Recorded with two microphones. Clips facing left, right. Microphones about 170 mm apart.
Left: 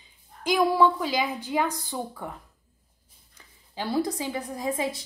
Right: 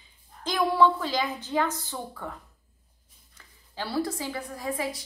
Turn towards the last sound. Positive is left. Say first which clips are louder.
# left 3 dB
turn(degrees=20)  # may be behind; listen again after turning